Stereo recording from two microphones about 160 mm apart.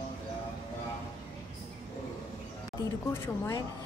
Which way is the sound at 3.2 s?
25° left (ahead or behind).